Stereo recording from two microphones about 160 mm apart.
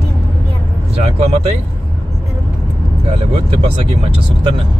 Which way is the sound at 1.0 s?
40° right (ahead or behind).